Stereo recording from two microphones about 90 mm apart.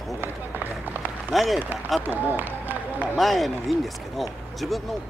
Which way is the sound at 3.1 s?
Centre (ahead or behind).